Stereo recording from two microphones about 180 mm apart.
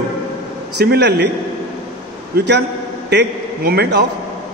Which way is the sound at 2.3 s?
70° right (ahead or behind).